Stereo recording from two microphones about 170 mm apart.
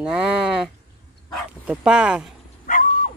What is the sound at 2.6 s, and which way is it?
Dog, 50° left (ahead or behind).